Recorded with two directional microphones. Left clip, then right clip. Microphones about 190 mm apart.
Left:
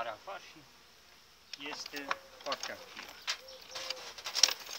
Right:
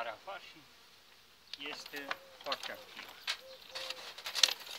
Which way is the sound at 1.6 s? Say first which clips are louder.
Left 2 dB; 20° right (ahead or behind).